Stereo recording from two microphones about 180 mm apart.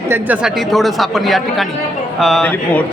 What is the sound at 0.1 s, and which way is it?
A man's voice, 5° right (ahead or behind).